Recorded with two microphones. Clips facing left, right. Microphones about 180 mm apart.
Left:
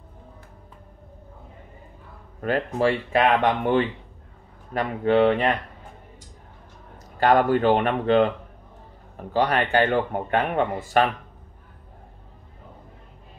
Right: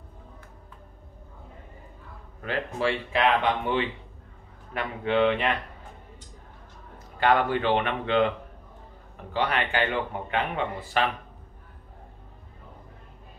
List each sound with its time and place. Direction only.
2.4 s a man's voice: 45° left (ahead or behind)
7.2 s a man's voice: 40° left (ahead or behind)